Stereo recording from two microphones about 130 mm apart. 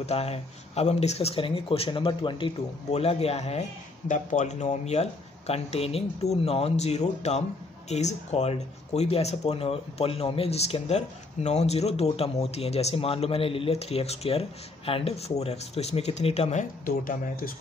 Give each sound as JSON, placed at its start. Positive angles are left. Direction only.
{"t": 0.0, "sound": "speech", "side_deg": 50}
{"t": 4.1, "sound": "speech", "side_deg": 70}